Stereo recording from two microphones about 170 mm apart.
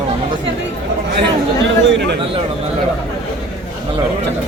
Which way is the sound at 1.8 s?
85° right.